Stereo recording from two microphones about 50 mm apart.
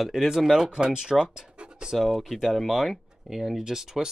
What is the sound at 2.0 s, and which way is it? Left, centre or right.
Speech, centre.